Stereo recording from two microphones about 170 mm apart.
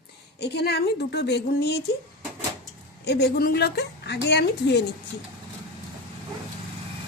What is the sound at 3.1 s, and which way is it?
Speech, 75° left (ahead or behind).